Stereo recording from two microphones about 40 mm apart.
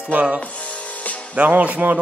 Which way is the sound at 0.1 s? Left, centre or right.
Right.